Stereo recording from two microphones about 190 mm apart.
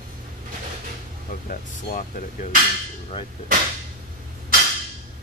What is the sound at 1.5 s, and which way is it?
Speech, 45° left (ahead or behind).